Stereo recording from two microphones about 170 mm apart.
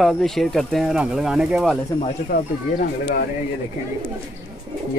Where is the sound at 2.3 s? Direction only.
65° left (ahead or behind).